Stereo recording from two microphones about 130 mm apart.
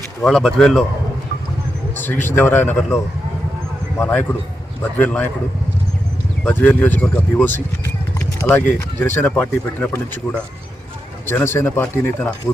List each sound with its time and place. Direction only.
0.2 s speech: centre (ahead or behind)
2.3 s speech: 15° left (ahead or behind)
3.9 s speech: 15° left (ahead or behind)
6.4 s speech: 10° left (ahead or behind)